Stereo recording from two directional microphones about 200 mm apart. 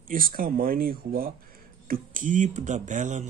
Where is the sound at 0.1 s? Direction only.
45° right (ahead or behind).